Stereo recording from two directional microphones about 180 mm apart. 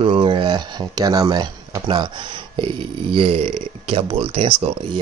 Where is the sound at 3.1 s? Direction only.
30° right (ahead or behind).